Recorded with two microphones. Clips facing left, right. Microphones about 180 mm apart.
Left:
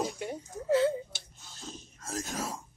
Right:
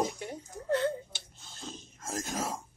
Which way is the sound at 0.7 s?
5° left (ahead or behind).